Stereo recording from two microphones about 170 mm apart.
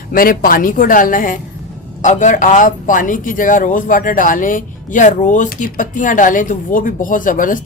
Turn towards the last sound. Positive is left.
turn(degrees=50)  # may be behind; listen again after turning